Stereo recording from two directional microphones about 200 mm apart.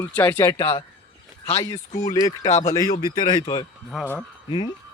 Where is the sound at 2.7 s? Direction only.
15° left (ahead or behind).